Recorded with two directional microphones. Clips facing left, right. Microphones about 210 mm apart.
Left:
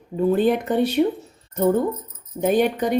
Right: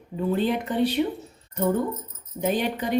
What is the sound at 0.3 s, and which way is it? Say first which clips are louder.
Speech: left 3 dB; 50° left (ahead or behind).